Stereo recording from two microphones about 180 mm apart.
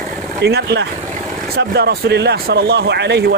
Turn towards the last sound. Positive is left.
turn(degrees=-65)  # may be behind; listen again after turning